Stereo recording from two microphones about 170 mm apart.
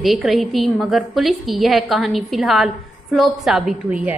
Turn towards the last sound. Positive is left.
turn(degrees=-5)  # may be behind; listen again after turning